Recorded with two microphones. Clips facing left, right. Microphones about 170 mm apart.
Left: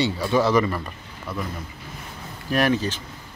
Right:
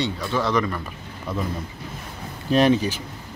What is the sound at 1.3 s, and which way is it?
Speech, 20° right (ahead or behind).